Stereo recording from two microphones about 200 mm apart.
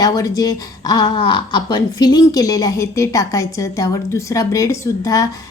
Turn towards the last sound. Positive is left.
turn(degrees=15)  # may be behind; listen again after turning